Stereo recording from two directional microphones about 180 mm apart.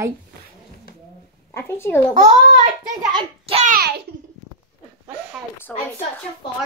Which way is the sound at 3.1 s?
30° right (ahead or behind).